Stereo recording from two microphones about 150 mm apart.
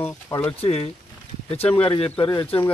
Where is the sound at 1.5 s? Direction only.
40° left (ahead or behind).